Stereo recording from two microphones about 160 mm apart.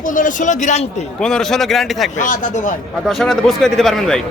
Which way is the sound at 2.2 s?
55° left (ahead or behind).